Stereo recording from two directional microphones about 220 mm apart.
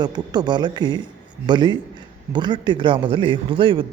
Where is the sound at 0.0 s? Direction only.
20° right (ahead or behind).